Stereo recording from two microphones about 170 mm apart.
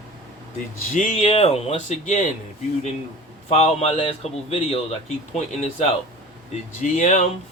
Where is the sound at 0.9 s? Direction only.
45° left (ahead or behind).